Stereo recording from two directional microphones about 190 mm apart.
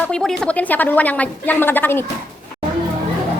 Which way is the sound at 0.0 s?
5° left (ahead or behind).